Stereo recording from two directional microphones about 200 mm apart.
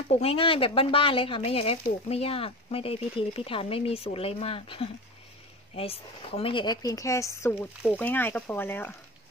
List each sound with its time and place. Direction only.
0.1 s speech: 30° left (ahead or behind); by 8.9 s 10° left (ahead or behind)